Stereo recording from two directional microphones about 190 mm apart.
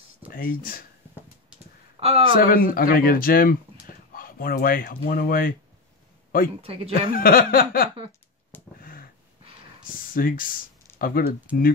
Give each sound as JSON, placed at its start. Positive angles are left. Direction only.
{"t": 0.3, "sound": "speech", "side_deg": 45}
{"t": 2.0, "sound": "speech", "side_deg": -30}
{"t": 2.3, "sound": "speech", "side_deg": 50}
{"t": 6.6, "sound": "speech", "side_deg": -30}
{"t": 6.9, "sound": "speech", "side_deg": 50}
{"t": 8.5, "sound": "a sound", "side_deg": 10}
{"t": 9.8, "sound": "speech", "side_deg": 45}